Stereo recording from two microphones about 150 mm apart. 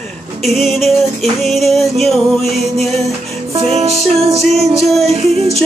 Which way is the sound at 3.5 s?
45° right (ahead or behind).